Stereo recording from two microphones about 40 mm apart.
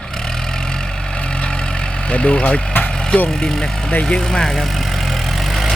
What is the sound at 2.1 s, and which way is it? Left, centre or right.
Speech, left.